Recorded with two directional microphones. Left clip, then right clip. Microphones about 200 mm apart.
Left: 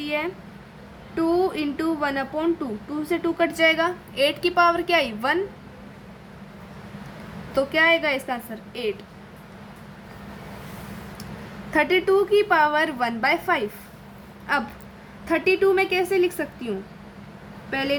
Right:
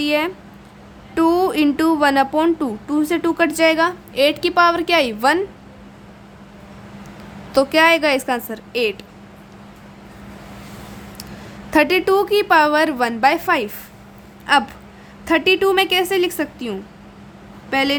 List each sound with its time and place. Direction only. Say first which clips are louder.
0.0 s a woman's voice: right 8 dB; 45° right (ahead or behind)
7.5 s a woman's voice: right 6 dB; 45° right (ahead or behind)
11.7 s a woman's voice: right 5 dB; 40° right (ahead or behind)